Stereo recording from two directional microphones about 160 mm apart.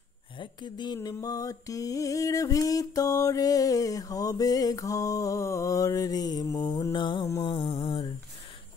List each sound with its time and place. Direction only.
0.4 s speech: 30° left (ahead or behind)
0.9 s music: 20° left (ahead or behind)
7.7 s a sound: 30° left (ahead or behind)